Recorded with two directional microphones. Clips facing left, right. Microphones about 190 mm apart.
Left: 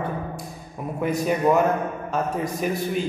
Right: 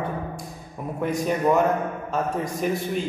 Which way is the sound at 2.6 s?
5° left (ahead or behind).